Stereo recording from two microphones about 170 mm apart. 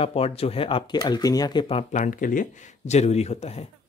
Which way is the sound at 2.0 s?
50° left (ahead or behind).